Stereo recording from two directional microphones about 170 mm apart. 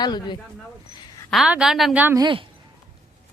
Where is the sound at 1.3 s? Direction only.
5° right (ahead or behind).